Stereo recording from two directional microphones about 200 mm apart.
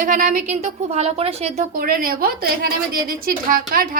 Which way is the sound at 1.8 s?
45° right (ahead or behind).